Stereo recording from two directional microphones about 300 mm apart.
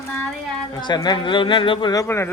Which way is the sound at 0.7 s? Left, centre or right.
Centre.